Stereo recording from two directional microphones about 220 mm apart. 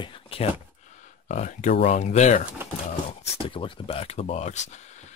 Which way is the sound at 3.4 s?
25° left (ahead or behind).